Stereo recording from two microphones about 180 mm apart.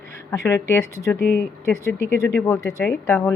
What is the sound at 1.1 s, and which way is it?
Speech, 65° left (ahead or behind).